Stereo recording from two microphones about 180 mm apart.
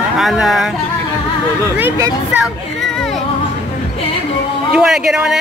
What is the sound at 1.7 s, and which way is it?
Speech, 15° right (ahead or behind).